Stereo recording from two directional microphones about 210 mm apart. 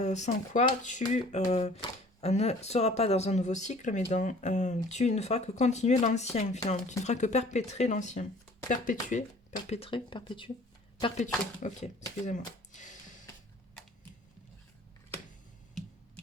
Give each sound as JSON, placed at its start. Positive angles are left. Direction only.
{"t": 0.0, "sound": "speech", "side_deg": 35}
{"t": 11.6, "sound": "speech", "side_deg": 35}